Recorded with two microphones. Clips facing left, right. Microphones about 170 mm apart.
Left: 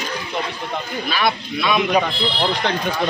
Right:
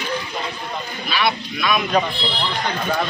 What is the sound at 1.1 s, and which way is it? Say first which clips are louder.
Speech: even; 45° left (ahead or behind).